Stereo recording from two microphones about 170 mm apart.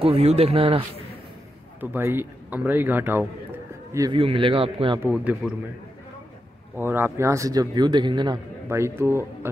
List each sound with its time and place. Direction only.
0.0 s a man's voice: 35° right (ahead or behind)
1.8 s a man's voice: 10° right (ahead or behind)
4.1 s a man's voice: 30° right (ahead or behind)
5.0 s speech: 10° right (ahead or behind)
6.8 s a man's voice: 15° right (ahead or behind)
8.6 s speech: 15° right (ahead or behind)